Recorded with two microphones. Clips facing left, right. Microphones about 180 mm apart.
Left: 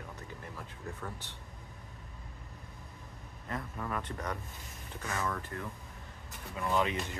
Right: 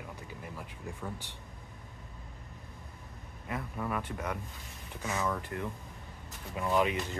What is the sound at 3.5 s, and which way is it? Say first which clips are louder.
Speech: right 2 dB; 10° right (ahead or behind).